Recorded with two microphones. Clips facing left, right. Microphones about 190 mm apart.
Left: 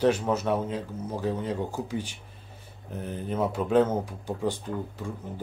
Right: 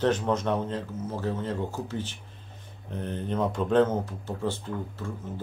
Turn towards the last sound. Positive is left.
turn(degrees=15)  # may be behind; listen again after turning